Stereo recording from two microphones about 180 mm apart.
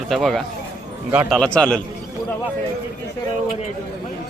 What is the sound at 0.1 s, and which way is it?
Speech, centre (ahead or behind).